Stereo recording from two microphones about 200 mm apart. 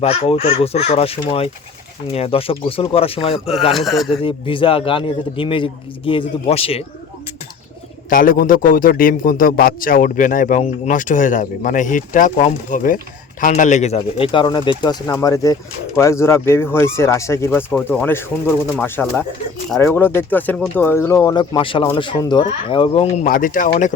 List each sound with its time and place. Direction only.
0.0 s a man's voice: 30° left (ahead or behind)
3.7 s speech: centre (ahead or behind)
4.1 s a man's voice: 25° left (ahead or behind)
8.1 s a man's voice: 45° left (ahead or behind); by 23.2 s 30° left (ahead or behind)
23.2 s a man's voice: 45° left (ahead or behind)